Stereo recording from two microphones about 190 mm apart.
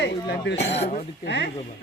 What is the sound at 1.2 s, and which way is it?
Speech, 65° left (ahead or behind).